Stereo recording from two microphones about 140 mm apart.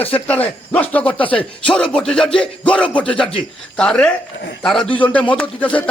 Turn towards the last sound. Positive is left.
turn(degrees=10)  # may be behind; listen again after turning